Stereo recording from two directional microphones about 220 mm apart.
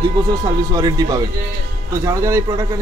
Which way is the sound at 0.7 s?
15° right (ahead or behind).